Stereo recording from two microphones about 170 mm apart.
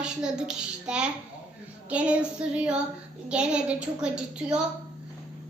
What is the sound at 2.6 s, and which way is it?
A woman's voice, 5° right (ahead or behind).